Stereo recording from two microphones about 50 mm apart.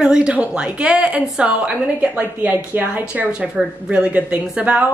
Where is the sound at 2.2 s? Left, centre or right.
Right.